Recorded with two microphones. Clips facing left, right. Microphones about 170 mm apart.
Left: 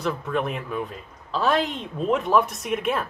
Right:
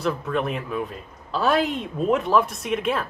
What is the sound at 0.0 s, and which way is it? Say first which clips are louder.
Speech: right 1 dB; centre (ahead or behind).